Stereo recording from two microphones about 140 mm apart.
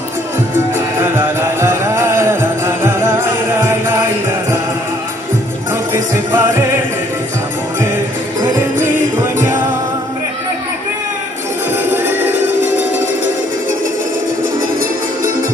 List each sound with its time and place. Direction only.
0.7 s music: 15° right (ahead or behind)
6.3 s music: 15° right (ahead or behind)
8.5 s music: 15° right (ahead or behind)
11.7 s music: 15° right (ahead or behind)